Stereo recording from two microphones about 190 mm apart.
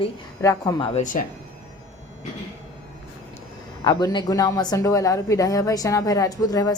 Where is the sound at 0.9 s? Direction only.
40° left (ahead or behind).